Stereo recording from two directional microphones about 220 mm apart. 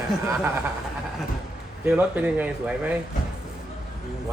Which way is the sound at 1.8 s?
5° right (ahead or behind).